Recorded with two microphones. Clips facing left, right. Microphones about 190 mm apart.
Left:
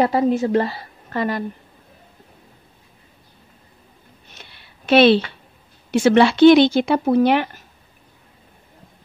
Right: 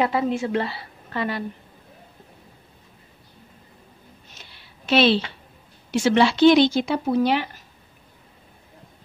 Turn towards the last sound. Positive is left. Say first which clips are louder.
# left 5 dB
turn(degrees=55)  # may be behind; listen again after turning